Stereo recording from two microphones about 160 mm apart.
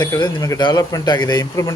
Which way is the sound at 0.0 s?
25° left (ahead or behind).